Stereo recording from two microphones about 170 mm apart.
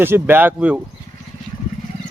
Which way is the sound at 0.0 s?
15° right (ahead or behind).